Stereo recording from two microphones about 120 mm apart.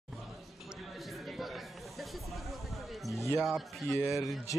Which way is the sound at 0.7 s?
Centre (ahead or behind).